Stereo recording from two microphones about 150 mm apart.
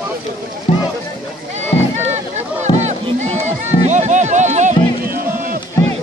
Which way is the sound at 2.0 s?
50° right (ahead or behind).